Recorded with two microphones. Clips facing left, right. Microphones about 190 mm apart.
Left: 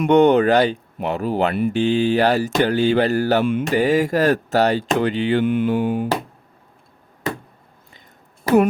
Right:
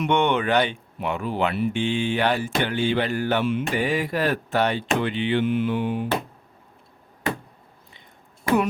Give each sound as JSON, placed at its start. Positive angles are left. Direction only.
{"t": 0.0, "sound": "speech", "side_deg": 40}